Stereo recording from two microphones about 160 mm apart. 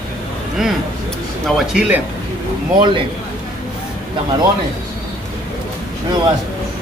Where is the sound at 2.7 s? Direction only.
30° right (ahead or behind).